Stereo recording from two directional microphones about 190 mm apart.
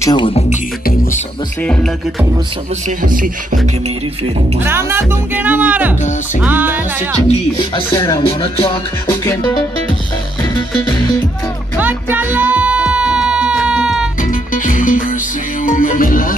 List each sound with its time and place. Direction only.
0.0 s music: 25° left (ahead or behind)
1.6 s speech: 5° left (ahead or behind)
3.0 s music: 45° right (ahead or behind)
4.6 s speech: 10° right (ahead or behind)
7.5 s music: 20° left (ahead or behind)
10.9 s music: 20° left (ahead or behind)
11.8 s music: 10° right (ahead or behind)
14.5 s music: 45° left (ahead or behind)